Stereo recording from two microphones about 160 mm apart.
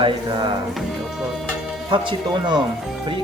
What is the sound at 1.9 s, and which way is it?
Speech, 30° right (ahead or behind).